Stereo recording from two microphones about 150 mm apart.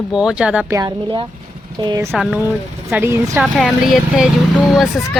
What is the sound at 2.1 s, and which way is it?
Speech, centre (ahead or behind).